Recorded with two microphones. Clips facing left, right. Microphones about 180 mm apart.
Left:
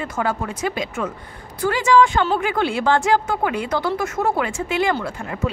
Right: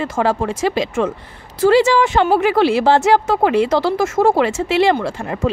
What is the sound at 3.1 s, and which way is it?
Speech, 90° right.